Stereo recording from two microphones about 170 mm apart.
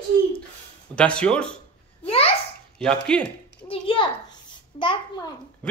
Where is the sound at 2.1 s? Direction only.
35° left (ahead or behind).